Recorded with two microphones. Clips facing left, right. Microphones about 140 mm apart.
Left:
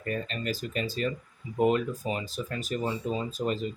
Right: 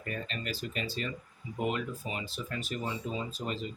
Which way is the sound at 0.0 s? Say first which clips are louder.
Left 6 dB; 40° left (ahead or behind).